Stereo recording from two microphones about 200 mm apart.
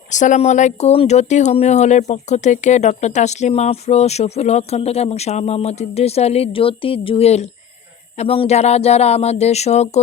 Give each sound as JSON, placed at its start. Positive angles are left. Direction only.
{"t": 0.1, "sound": "speech", "side_deg": 40}